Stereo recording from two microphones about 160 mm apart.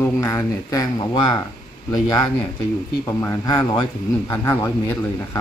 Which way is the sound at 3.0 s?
20° left (ahead or behind).